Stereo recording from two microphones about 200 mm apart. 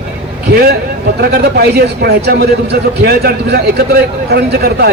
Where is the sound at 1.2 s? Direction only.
50° right (ahead or behind).